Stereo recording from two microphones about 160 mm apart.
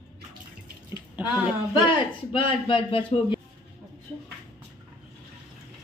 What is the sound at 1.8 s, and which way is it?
Speech, 30° left (ahead or behind).